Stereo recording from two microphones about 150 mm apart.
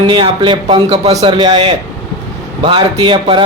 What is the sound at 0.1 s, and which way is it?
Speech, 30° right (ahead or behind).